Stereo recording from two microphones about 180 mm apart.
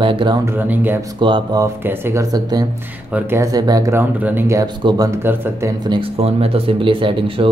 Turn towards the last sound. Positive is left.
turn(degrees=-30)  # may be behind; listen again after turning